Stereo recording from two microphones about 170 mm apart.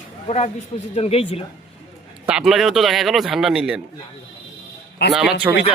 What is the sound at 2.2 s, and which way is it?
A man's voice, 5° right (ahead or behind).